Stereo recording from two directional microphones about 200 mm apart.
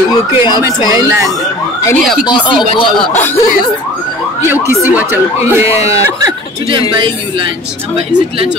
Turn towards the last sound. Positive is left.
turn(degrees=-20)  # may be behind; listen again after turning